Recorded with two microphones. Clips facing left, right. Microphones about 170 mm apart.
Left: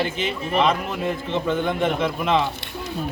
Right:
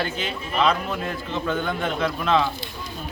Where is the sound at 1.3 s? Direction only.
20° left (ahead or behind).